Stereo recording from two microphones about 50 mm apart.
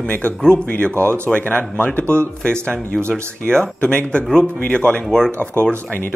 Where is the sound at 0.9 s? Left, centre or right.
Right.